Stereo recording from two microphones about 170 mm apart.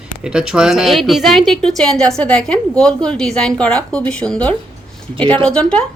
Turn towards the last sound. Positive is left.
turn(degrees=5)  # may be behind; listen again after turning